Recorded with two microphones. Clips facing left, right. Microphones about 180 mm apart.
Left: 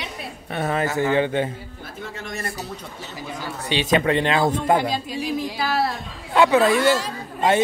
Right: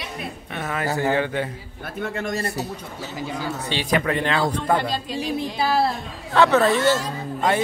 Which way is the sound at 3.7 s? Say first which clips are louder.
Left 4 dB; 20° left (ahead or behind).